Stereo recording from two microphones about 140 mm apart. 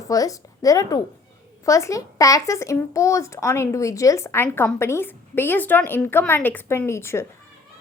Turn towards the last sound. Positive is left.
turn(degrees=20)  # may be behind; listen again after turning